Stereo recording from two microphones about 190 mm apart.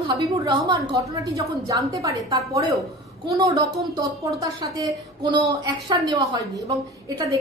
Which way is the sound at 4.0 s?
20° right (ahead or behind).